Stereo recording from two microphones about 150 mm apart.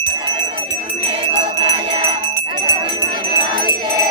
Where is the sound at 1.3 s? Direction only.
35° right (ahead or behind).